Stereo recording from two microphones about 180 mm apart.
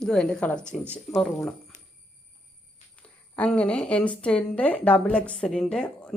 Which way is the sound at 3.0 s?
5° left (ahead or behind).